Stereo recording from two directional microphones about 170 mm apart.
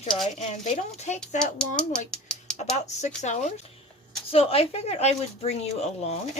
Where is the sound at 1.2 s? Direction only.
5° left (ahead or behind).